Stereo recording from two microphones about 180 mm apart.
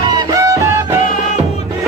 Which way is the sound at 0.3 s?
15° right (ahead or behind).